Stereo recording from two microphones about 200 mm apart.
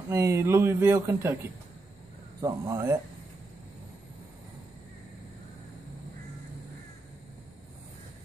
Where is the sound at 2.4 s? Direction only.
15° right (ahead or behind).